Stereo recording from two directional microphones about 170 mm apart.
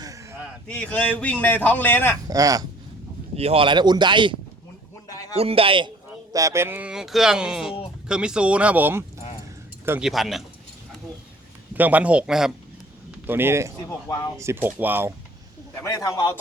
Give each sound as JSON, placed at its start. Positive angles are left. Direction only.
{"t": 0.0, "sound": "a sound", "side_deg": -20}
{"t": 0.7, "sound": "a man's voice", "side_deg": 10}
{"t": 2.2, "sound": "speech", "side_deg": -20}
{"t": 3.3, "sound": "speech", "side_deg": -35}
{"t": 5.1, "sound": "a sound", "side_deg": 20}
{"t": 5.4, "sound": "a man's voice", "side_deg": -35}
{"t": 6.3, "sound": "speech", "side_deg": -20}
{"t": 10.0, "sound": "speech", "side_deg": 0}
{"t": 11.7, "sound": "speech", "side_deg": -10}
{"t": 15.8, "sound": "a man's voice", "side_deg": 20}